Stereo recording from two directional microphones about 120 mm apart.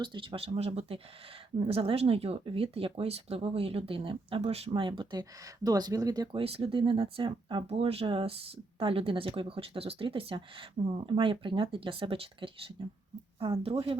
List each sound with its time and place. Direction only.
0.0 s speech: 40° right (ahead or behind)
4.7 s speech: 40° right (ahead or behind)
6.3 s speech: 50° right (ahead or behind)
7.7 s speech: 55° right (ahead or behind)